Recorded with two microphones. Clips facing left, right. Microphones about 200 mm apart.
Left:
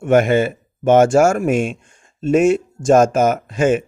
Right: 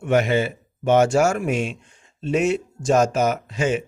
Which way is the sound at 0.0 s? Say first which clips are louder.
Left 5 dB; 50° left (ahead or behind).